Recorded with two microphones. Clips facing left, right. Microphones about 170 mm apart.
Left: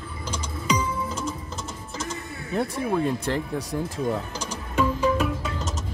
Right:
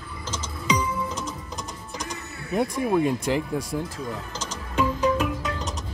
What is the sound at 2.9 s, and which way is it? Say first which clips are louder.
Speech: right 2 dB; 15° right (ahead or behind).